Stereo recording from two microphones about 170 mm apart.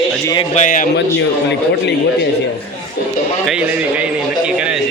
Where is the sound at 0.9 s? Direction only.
90° left.